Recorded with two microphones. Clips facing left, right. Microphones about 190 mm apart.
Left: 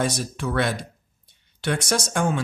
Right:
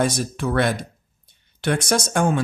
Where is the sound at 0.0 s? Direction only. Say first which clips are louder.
Right 3 dB; 50° right (ahead or behind).